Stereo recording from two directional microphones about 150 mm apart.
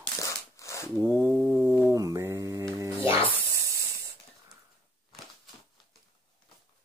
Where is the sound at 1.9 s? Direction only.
20° right (ahead or behind).